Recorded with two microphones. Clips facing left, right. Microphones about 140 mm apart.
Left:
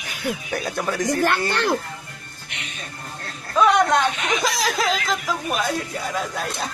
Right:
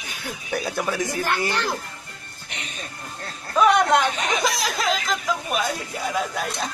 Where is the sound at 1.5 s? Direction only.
65° left (ahead or behind).